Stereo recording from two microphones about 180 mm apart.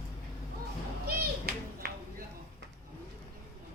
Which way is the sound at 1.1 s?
60° right (ahead or behind).